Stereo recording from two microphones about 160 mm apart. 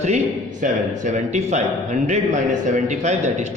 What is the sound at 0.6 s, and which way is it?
A man's voice, 50° right (ahead or behind).